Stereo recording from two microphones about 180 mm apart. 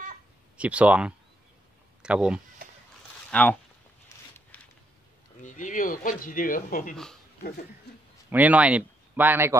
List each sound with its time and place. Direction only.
0.6 s speech: 5° right (ahead or behind)
3.3 s speech: 10° left (ahead or behind)
5.4 s speech: 45° left (ahead or behind)
8.3 s speech: 10° right (ahead or behind)